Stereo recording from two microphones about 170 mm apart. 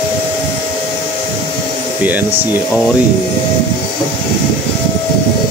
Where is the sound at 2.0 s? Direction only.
10° right (ahead or behind).